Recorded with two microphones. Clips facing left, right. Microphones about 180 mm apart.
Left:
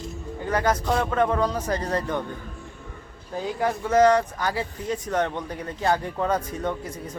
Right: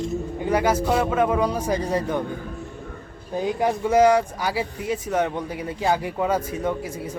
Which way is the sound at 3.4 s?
15° right (ahead or behind).